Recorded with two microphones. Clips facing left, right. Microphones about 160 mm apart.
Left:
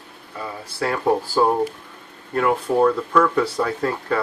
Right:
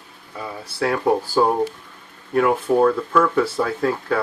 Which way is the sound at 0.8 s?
Centre (ahead or behind).